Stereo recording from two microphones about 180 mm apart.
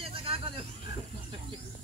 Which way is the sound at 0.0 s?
30° right (ahead or behind).